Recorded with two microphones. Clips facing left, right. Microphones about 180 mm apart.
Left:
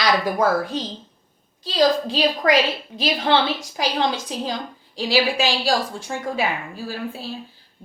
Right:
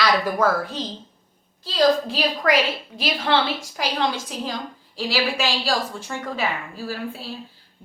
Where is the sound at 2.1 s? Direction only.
20° left (ahead or behind).